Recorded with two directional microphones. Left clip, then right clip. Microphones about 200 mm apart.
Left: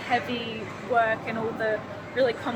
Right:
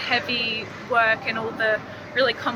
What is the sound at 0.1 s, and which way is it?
Speech, 10° left (ahead or behind).